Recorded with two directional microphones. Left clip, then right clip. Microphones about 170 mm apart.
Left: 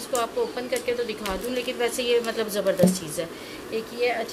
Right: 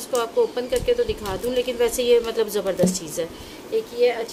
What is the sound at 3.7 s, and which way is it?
Speech, 50° right (ahead or behind).